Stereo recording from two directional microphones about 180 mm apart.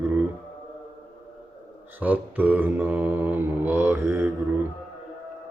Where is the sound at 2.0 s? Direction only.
10° right (ahead or behind).